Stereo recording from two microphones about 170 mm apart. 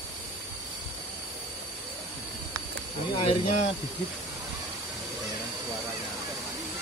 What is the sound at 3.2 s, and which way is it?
Speech, 40° left (ahead or behind).